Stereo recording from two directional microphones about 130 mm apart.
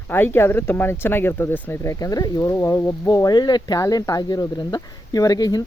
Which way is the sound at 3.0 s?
30° left (ahead or behind).